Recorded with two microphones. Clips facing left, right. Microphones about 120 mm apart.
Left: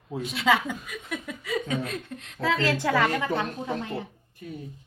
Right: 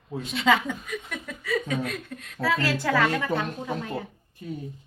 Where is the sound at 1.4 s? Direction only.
20° left (ahead or behind).